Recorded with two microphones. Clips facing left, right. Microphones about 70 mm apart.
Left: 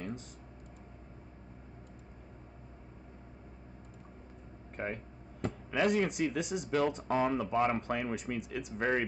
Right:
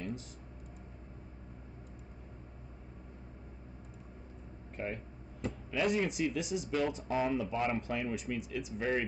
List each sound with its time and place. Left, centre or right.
4.7 s speech: left